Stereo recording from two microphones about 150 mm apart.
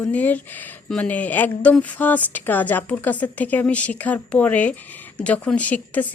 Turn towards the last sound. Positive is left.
turn(degrees=10)  # may be behind; listen again after turning